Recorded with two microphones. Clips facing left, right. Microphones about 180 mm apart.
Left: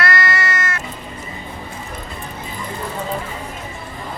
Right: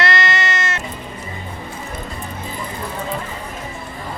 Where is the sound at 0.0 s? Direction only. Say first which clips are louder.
Right 1 dB; 25° right (ahead or behind).